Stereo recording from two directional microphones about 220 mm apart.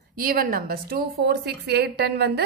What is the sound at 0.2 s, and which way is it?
A woman's voice, 40° right (ahead or behind).